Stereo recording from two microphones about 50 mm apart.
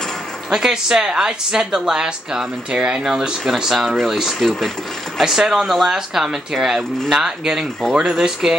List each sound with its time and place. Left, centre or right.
0.5 s a woman's voice: centre